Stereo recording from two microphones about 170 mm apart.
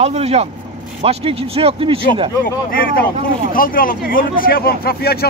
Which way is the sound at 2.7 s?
60° left (ahead or behind).